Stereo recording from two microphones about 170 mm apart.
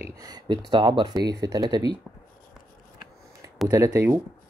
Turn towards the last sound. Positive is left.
turn(degrees=-15)  # may be behind; listen again after turning